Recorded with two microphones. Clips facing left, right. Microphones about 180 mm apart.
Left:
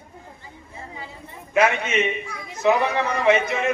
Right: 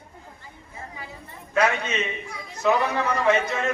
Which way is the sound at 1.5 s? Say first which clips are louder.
Left 3 dB; 20° left (ahead or behind).